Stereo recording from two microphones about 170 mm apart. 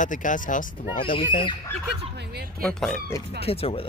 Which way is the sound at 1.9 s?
70° right (ahead or behind).